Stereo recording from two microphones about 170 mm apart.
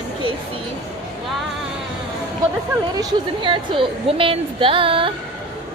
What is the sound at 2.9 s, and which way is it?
A woman's voice, 25° right (ahead or behind).